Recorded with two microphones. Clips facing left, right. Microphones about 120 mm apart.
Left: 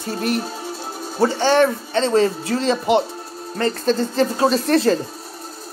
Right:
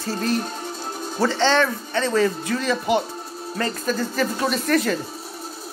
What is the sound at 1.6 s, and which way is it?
Speech, 25° left (ahead or behind).